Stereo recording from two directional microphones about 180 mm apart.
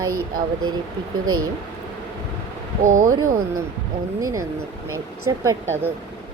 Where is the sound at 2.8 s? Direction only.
50° right (ahead or behind).